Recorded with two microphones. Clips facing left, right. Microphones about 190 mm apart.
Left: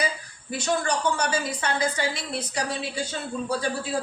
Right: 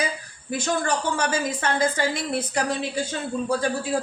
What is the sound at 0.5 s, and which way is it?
A woman's voice, 50° right (ahead or behind).